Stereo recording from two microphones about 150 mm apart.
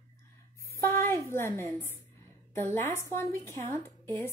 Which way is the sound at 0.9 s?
15° left (ahead or behind).